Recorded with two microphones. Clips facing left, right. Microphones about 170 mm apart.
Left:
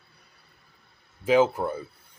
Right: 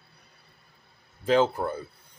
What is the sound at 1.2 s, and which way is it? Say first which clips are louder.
Speech: left 2 dB; 5° left (ahead or behind).